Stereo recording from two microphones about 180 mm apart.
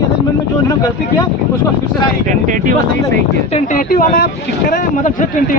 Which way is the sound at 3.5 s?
45° left (ahead or behind).